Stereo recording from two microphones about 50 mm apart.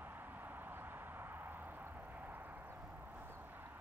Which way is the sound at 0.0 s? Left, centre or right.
Right.